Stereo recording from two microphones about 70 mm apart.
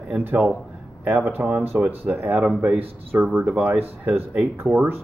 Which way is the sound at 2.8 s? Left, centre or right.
Right.